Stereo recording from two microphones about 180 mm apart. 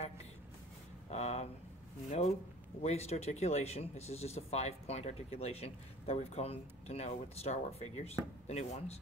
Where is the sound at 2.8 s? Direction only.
35° left (ahead or behind).